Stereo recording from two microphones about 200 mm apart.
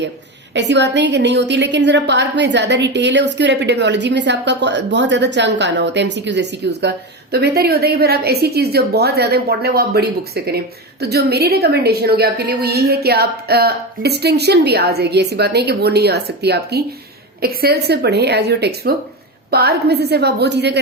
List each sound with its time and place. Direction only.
0.5 s a woman's voice: 60° right (ahead or behind)